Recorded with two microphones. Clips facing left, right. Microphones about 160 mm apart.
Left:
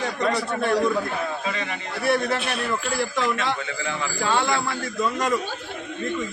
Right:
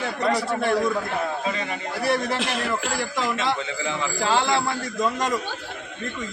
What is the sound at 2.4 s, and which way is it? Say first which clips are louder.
Speech: right 1 dB; 90° right.